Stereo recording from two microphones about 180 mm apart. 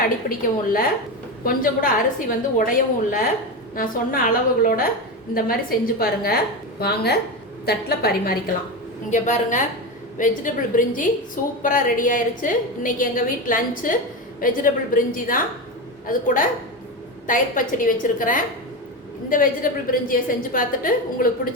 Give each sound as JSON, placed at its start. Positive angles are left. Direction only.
{"t": 0.3, "sound": "a woman's voice", "side_deg": 50}
{"t": 5.3, "sound": "a woman's voice", "side_deg": 55}
{"t": 9.0, "sound": "a woman's voice", "side_deg": 45}